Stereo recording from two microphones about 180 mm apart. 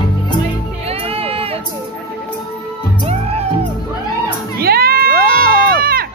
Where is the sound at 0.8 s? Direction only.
35° right (ahead or behind).